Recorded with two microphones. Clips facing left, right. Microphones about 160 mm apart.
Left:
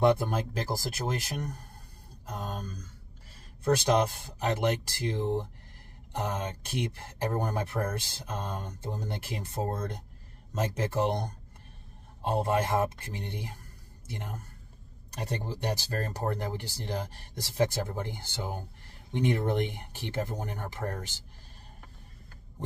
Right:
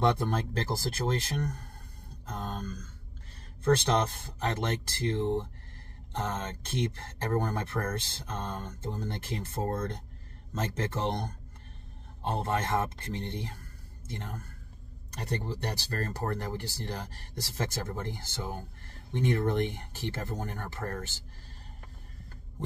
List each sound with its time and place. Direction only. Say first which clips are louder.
0.0 s speech: left 3 dB; 10° left (ahead or behind)
2.2 s a sound: even; 10° left (ahead or behind)
3.6 s speech: left 1 dB; 10° left (ahead or behind)
17.6 s speech: left 6 dB; 15° left (ahead or behind)